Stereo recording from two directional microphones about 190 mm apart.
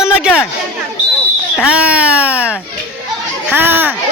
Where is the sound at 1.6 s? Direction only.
5° right (ahead or behind).